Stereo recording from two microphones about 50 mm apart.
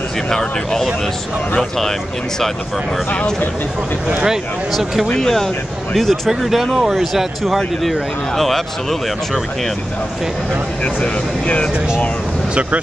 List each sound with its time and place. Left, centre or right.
0.3 s speech: centre
3.1 s speech: centre
5.0 s speech: centre
11.0 s speech: left